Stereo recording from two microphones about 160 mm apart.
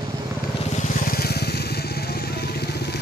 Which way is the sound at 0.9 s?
65° left (ahead or behind).